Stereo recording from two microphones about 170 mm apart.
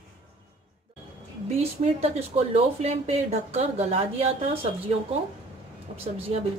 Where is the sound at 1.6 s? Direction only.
35° right (ahead or behind).